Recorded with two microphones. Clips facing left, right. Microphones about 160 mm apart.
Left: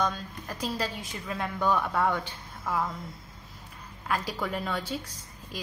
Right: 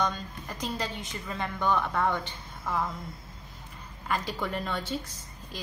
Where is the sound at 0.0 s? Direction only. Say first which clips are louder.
Even; 5° left (ahead or behind).